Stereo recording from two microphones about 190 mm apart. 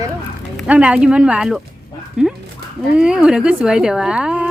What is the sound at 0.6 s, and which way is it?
Speech, 5° right (ahead or behind).